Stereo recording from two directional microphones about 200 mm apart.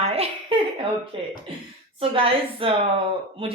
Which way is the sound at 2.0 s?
25° right (ahead or behind).